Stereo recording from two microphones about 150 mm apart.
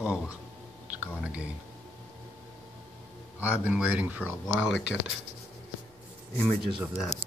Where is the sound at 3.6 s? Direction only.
10° right (ahead or behind).